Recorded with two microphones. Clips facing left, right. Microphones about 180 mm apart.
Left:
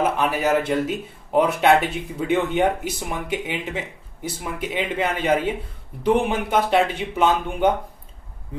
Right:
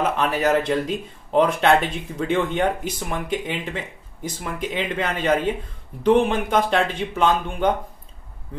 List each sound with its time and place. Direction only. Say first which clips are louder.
0.0 s speech: even; 10° left (ahead or behind)